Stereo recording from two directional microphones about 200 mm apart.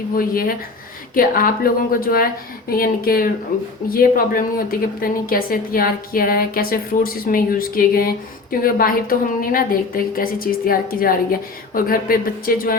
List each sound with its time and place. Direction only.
0.1 s a woman's voice: 45° left (ahead or behind)